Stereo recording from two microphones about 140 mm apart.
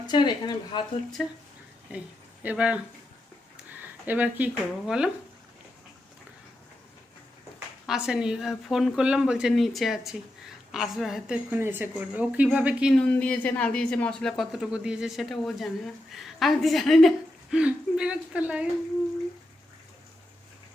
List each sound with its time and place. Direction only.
0.1 s speech: 35° left (ahead or behind)
1.2 s speech: centre (ahead or behind)
2.4 s speech: 10° right (ahead or behind)
7.9 s speech: 5° right (ahead or behind)
11.5 s speech: 15° right (ahead or behind)
12.9 s speech: 10° left (ahead or behind); by 18.7 s 10° right (ahead or behind)